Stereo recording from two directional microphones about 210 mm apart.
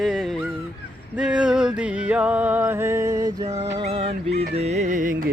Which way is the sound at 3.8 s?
25° right (ahead or behind).